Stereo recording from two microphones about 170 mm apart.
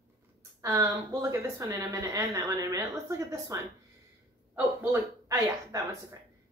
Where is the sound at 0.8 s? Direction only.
15° right (ahead or behind).